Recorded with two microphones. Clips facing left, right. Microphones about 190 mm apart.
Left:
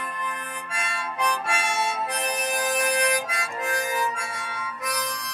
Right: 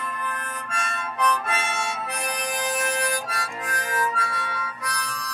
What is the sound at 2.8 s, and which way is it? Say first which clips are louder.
Harmonica: left 2 dB; 15° left (ahead or behind).